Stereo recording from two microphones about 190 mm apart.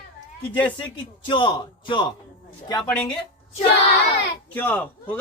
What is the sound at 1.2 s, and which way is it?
Speech, 25° left (ahead or behind).